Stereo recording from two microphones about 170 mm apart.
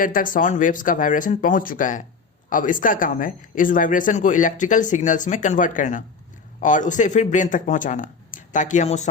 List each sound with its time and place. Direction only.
0.0 s speech: 50° left (ahead or behind)